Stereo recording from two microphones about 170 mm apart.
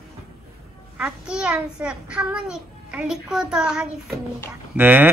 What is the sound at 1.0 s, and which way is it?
A child's voice, 5° right (ahead or behind).